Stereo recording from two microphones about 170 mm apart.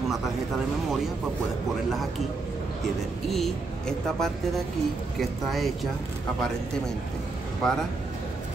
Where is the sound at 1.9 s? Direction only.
Centre (ahead or behind).